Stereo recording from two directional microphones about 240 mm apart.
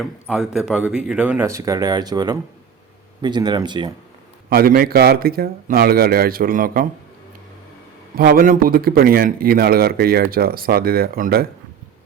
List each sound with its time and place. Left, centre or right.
0.0 s speech: centre
4.4 s a man's voice: right
8.1 s a man's voice: right